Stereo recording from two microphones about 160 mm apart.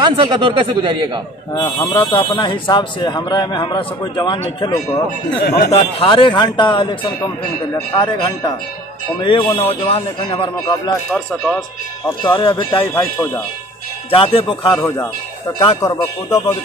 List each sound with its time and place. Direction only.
0.0 s speech: 30° right (ahead or behind)
1.5 s speech: 25° left (ahead or behind)
5.4 s speech: 80° left
5.7 s speech: 35° left (ahead or behind)
11.1 s speech: 5° left (ahead or behind)
12.2 s speech: 30° left (ahead or behind)
12.7 s a man's voice: 15° left (ahead or behind)
14.1 s speech: 35° left (ahead or behind)
14.8 s a man's voice: 20° left (ahead or behind)